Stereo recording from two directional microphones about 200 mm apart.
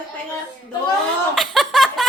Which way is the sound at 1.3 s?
Centre (ahead or behind).